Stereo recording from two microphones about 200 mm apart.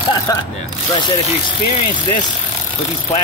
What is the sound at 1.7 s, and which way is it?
Speech, 25° left (ahead or behind).